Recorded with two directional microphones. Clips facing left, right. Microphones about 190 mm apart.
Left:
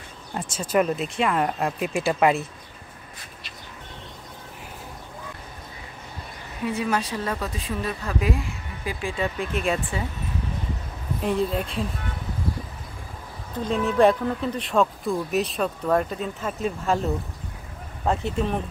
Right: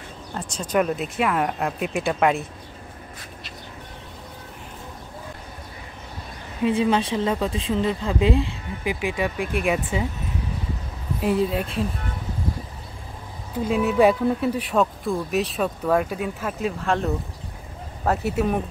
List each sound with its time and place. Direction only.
0.3 s speech: 5° left (ahead or behind)
6.6 s speech: 25° right (ahead or behind)
11.1 s speech: 5° right (ahead or behind)
13.6 s speech: 10° right (ahead or behind)
18.0 s speech: 5° right (ahead or behind)